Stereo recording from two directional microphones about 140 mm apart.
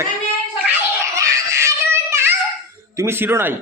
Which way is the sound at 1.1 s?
20° right (ahead or behind).